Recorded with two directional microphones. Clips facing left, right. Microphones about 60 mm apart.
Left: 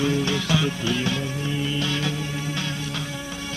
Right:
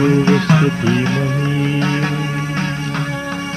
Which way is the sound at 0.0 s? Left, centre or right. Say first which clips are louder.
Right 10 dB; right.